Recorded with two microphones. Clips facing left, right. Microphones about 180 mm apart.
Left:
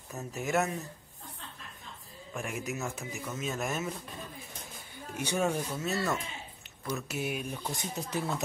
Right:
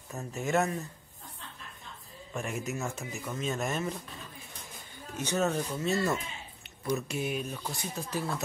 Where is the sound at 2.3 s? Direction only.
Centre (ahead or behind).